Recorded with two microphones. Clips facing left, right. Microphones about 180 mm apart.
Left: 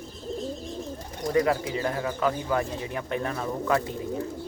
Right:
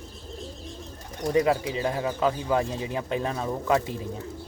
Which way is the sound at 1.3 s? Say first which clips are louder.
Right 1 dB; 20° right (ahead or behind).